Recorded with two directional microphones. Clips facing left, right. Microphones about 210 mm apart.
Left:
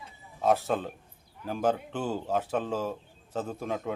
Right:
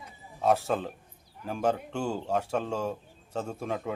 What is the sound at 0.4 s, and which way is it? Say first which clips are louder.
A man's voice: even; centre (ahead or behind).